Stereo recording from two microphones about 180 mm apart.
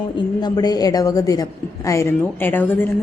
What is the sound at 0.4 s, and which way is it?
A woman's voice, 20° left (ahead or behind).